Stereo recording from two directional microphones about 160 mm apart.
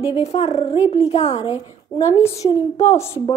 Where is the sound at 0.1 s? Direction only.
40° left (ahead or behind).